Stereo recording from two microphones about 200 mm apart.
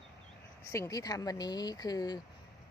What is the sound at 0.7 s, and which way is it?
Speech, 15° left (ahead or behind).